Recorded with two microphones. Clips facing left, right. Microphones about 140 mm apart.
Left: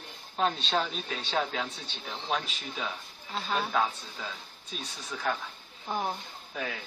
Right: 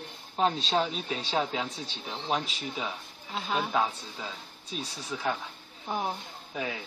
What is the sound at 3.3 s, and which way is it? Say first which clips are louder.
Speech: right 1 dB; 5° right (ahead or behind).